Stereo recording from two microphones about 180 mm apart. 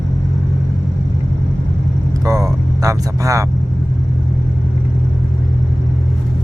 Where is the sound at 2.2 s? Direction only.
20° right (ahead or behind).